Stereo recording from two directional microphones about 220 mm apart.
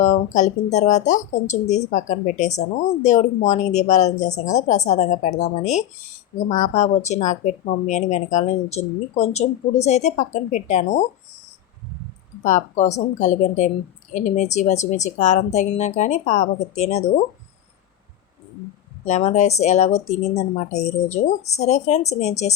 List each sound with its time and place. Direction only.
0.0 s speech: 35° left (ahead or behind)
12.4 s speech: 35° left (ahead or behind)
19.0 s speech: 30° left (ahead or behind)